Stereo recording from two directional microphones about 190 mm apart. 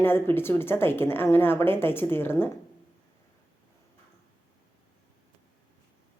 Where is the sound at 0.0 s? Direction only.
10° left (ahead or behind).